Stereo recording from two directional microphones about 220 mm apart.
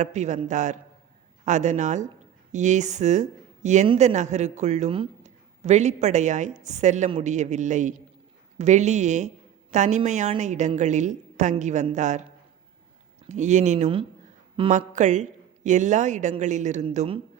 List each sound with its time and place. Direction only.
0.0 s a woman's voice: 30° right (ahead or behind)
13.2 s a woman's voice: 30° right (ahead or behind)